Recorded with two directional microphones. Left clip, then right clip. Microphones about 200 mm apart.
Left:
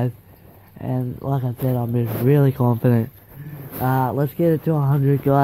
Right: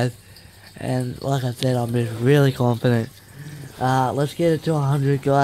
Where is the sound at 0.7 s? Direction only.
15° right (ahead or behind).